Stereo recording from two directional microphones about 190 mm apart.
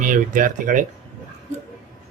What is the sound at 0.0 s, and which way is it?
Speech, 45° right (ahead or behind).